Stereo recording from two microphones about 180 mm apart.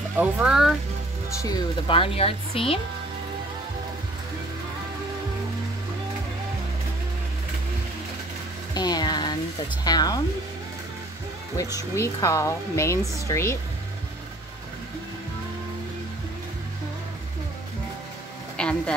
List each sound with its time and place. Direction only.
0.2 s speech: 5° right (ahead or behind)
1.4 s speech: 20° left (ahead or behind)
8.7 s a sound: 20° left (ahead or behind)
9.8 s speech: 20° left (ahead or behind)
11.5 s speech: 15° left (ahead or behind)
18.6 s a sound: 5° left (ahead or behind)